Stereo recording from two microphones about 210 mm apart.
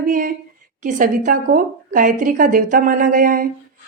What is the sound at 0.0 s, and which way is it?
Speech, 40° right (ahead or behind).